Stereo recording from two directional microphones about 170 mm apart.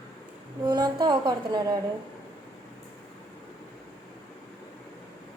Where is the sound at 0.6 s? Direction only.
25° right (ahead or behind).